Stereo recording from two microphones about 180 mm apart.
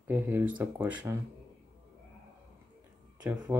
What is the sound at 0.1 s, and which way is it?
Speech, 10° right (ahead or behind).